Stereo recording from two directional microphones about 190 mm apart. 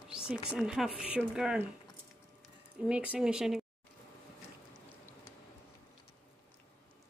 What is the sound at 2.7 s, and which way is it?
Speech, 5° right (ahead or behind).